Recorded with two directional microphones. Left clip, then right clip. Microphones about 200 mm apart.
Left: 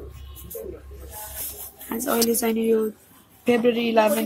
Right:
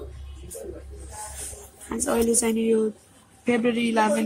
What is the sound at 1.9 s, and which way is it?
A woman's voice, 10° left (ahead or behind).